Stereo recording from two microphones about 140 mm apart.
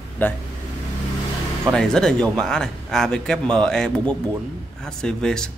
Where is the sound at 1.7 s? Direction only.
5° left (ahead or behind).